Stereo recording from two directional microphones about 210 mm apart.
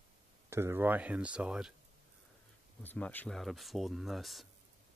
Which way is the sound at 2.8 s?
10° left (ahead or behind).